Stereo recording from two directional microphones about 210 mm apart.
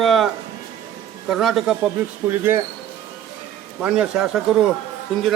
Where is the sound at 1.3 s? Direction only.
Centre (ahead or behind).